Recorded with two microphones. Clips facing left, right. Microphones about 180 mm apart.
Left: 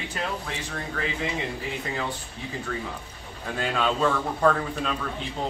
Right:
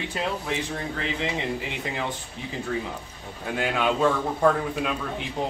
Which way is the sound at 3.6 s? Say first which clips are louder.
Right 2 dB; 15° right (ahead or behind).